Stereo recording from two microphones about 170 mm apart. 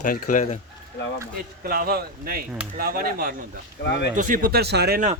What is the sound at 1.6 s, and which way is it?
Speech, 60° right (ahead or behind).